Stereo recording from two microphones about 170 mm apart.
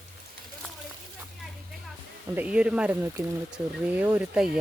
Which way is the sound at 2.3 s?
5° right (ahead or behind).